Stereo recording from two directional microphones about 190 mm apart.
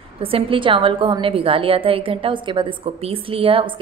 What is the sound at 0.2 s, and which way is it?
A woman's voice, 30° right (ahead or behind).